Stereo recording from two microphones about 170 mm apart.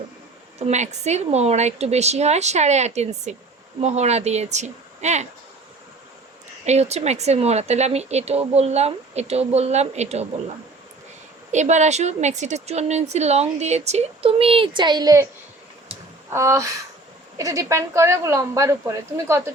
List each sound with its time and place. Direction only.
0.6 s a woman's voice: 40° right (ahead or behind)
6.7 s a woman's voice: 40° right (ahead or behind)
11.5 s a woman's voice: 45° right (ahead or behind); by 15.3 s 20° right (ahead or behind)
16.3 s a woman's voice: 15° right (ahead or behind)